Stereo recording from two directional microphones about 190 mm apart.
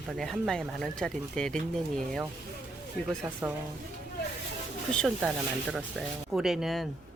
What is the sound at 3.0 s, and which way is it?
Speech, 60° left (ahead or behind).